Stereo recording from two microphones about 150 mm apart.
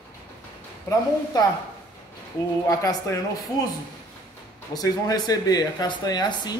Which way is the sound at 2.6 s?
25° left (ahead or behind).